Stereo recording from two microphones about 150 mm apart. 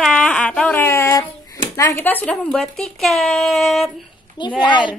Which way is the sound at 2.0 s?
10° left (ahead or behind).